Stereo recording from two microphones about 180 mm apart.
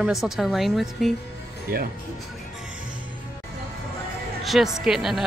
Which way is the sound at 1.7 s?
55° right (ahead or behind).